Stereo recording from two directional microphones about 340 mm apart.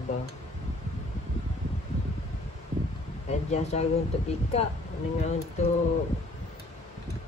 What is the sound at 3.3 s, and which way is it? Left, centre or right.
Speech, centre.